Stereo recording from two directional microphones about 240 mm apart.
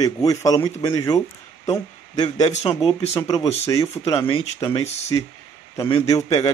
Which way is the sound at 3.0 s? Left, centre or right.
Centre.